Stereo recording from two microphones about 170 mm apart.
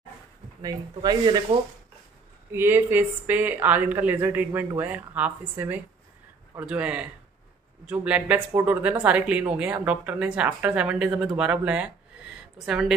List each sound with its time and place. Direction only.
0.6 s speech: 25° right (ahead or behind)
2.5 s speech: 15° right (ahead or behind)